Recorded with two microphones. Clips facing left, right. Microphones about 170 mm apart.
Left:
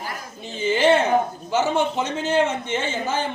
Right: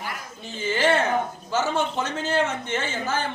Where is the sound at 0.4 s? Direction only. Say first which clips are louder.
Left 4 dB; 20° left (ahead or behind).